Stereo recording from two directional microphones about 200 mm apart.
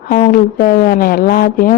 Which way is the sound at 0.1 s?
45° left (ahead or behind).